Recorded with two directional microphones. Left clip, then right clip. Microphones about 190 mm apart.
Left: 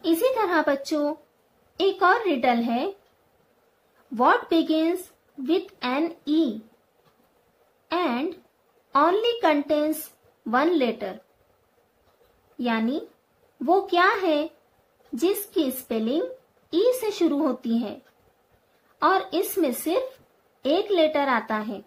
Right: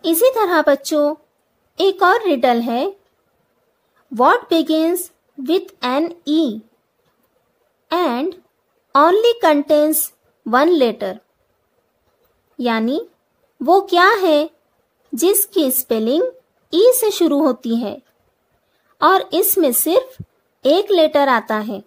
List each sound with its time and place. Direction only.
0.0 s speech: 50° right (ahead or behind)
4.1 s speech: 50° right (ahead or behind)
7.9 s speech: 50° right (ahead or behind)
12.5 s a woman's voice: 55° right (ahead or behind)
18.9 s speech: 50° right (ahead or behind)